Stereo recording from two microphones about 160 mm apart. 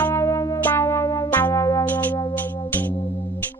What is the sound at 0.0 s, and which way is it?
Music, 15° left (ahead or behind).